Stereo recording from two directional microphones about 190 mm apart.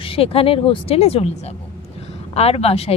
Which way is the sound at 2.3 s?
30° left (ahead or behind).